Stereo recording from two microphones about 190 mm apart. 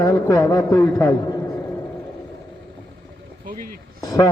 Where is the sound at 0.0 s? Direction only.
15° left (ahead or behind).